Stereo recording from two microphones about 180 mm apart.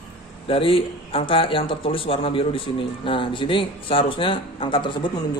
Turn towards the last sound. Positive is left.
turn(degrees=25)  # may be behind; listen again after turning